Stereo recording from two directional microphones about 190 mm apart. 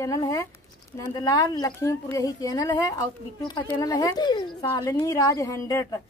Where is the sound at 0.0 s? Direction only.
20° left (ahead or behind).